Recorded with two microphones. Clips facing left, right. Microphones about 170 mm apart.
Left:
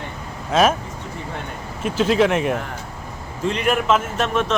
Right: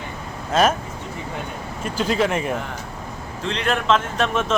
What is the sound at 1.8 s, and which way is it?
Speech, centre (ahead or behind).